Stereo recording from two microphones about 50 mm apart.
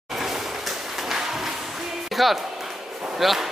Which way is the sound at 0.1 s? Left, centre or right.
Centre.